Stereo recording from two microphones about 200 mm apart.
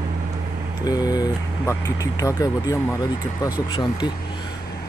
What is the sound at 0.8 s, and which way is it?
Speech, 20° left (ahead or behind).